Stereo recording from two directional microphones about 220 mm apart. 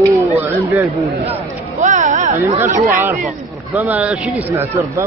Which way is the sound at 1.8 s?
35° right (ahead or behind).